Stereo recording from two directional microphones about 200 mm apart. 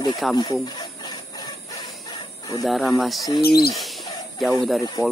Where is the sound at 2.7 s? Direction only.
Centre (ahead or behind).